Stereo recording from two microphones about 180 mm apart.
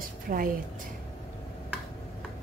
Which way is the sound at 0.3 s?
50° right (ahead or behind).